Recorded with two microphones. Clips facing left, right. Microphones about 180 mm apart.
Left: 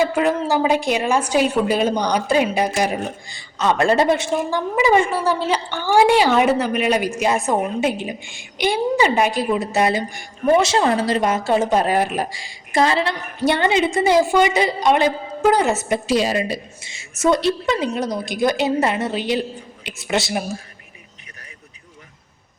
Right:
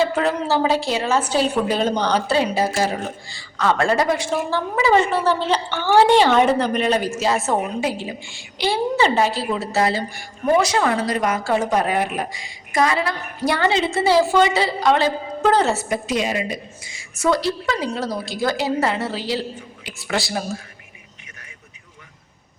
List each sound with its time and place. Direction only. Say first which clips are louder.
0.0 s a woman's voice: left 2 dB; 10° left (ahead or behind)
4.5 s a woman's voice: left 1 dB; 15° left (ahead or behind)